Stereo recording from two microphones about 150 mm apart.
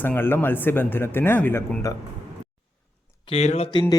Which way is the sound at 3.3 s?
45° left (ahead or behind).